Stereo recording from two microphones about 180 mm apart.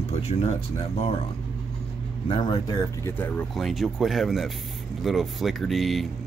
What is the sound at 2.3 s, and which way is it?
Speech, 25° left (ahead or behind).